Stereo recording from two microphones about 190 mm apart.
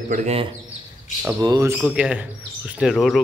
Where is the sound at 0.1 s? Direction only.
35° right (ahead or behind).